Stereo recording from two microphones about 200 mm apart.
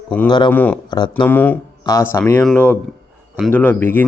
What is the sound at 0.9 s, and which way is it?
Speech, 20° left (ahead or behind).